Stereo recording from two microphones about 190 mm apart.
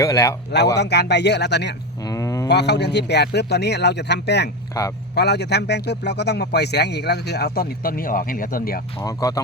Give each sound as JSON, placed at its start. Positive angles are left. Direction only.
{"t": 0.0, "sound": "speech", "side_deg": 15}
{"t": 0.8, "sound": "speech", "side_deg": 60}
{"t": 2.0, "sound": "a sound", "side_deg": 15}
{"t": 2.5, "sound": "speech", "side_deg": 60}
{"t": 4.7, "sound": "speech", "side_deg": 15}
{"t": 5.1, "sound": "speech", "side_deg": 60}
{"t": 9.0, "sound": "speech", "side_deg": 20}